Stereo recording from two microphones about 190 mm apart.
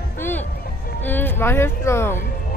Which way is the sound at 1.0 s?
10° left (ahead or behind).